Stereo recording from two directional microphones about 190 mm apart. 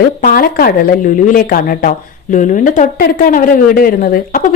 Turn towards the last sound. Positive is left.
turn(degrees=50)  # may be behind; listen again after turning